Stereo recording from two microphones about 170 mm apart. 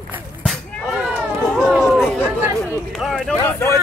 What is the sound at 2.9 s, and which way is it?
Speech, centre (ahead or behind).